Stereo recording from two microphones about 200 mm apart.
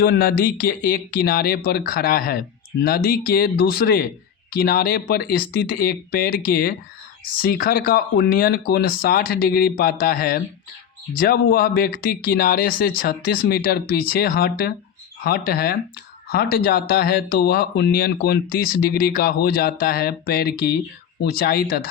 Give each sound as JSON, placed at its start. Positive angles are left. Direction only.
{"t": 0.0, "sound": "speech", "side_deg": 45}